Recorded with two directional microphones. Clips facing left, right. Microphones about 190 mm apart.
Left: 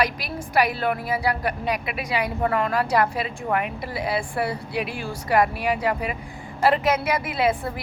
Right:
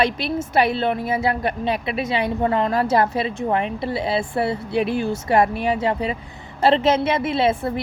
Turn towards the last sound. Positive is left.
turn(degrees=-25)  # may be behind; listen again after turning